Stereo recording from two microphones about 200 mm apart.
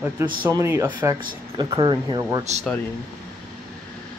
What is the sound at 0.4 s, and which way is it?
Speech, 15° right (ahead or behind).